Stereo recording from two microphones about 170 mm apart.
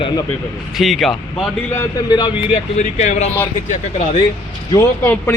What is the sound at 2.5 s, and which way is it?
Speech, 40° left (ahead or behind).